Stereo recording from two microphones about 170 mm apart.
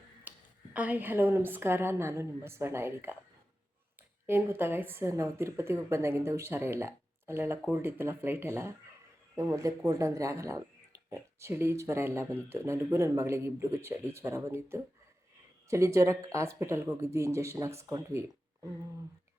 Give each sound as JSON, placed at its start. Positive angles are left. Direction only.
{"t": 0.3, "sound": "a woman's voice", "side_deg": -10}
{"t": 4.3, "sound": "a woman's voice", "side_deg": -15}